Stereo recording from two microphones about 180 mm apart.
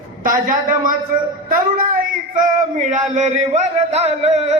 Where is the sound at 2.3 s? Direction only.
40° right (ahead or behind).